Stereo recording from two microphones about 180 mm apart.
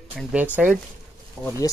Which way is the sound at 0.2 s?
5° right (ahead or behind).